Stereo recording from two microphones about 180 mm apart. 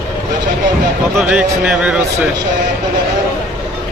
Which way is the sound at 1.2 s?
5° right (ahead or behind).